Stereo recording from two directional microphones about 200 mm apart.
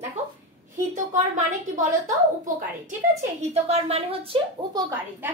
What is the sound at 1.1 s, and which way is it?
Speech, 40° right (ahead or behind).